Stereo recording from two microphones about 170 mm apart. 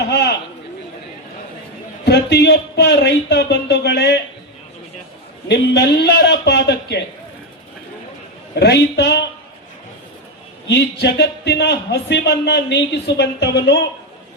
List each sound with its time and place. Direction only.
0.0 s a sound: 75° left (ahead or behind)
2.0 s speech: 75° left (ahead or behind)
5.5 s speech: 75° left (ahead or behind)
8.5 s speech: 75° left (ahead or behind)
10.7 s speech: 80° left